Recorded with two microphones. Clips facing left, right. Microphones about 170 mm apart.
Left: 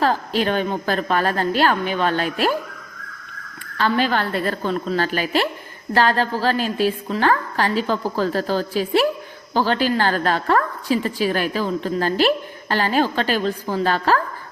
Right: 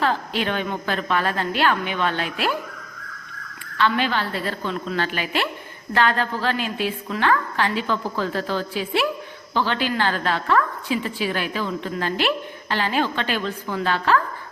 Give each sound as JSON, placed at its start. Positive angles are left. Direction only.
{"t": 0.0, "sound": "a woman's voice", "side_deg": 40}
{"t": 3.8, "sound": "a woman's voice", "side_deg": 40}
{"t": 4.2, "sound": "a woman's voice", "side_deg": 55}